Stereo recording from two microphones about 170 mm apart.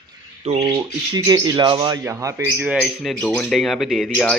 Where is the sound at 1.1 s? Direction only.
25° right (ahead or behind).